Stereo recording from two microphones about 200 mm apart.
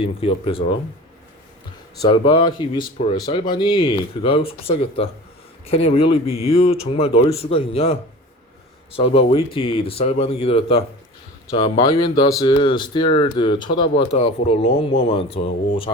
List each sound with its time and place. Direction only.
0.0 s speech: 30° left (ahead or behind)
2.0 s speech: 25° left (ahead or behind)